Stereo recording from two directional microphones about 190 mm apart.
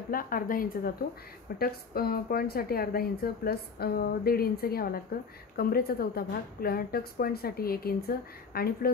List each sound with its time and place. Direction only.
0.1 s speech: 50° left (ahead or behind)